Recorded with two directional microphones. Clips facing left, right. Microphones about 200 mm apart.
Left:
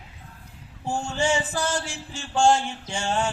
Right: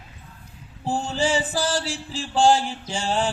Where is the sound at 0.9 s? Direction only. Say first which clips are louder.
Right 1 dB; 35° right (ahead or behind).